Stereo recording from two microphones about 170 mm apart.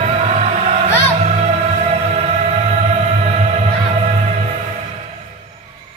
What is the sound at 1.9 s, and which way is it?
Music, 40° right (ahead or behind).